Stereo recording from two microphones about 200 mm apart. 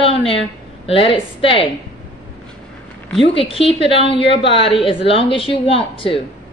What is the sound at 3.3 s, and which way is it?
A woman's voice, 25° left (ahead or behind).